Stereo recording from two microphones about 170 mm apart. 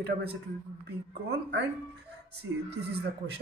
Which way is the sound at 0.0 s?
70° right (ahead or behind).